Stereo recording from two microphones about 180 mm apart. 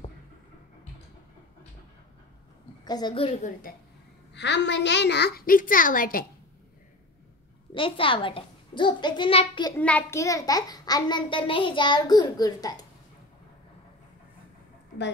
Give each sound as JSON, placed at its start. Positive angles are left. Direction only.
{"t": 2.8, "sound": "a woman's voice", "side_deg": 25}
{"t": 4.3, "sound": "a woman's voice", "side_deg": 75}
{"t": 7.7, "sound": "a child's voice", "side_deg": 30}
{"t": 9.8, "sound": "a child's voice", "side_deg": 10}